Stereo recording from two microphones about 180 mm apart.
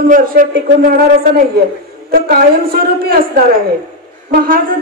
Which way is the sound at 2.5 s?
55° right (ahead or behind).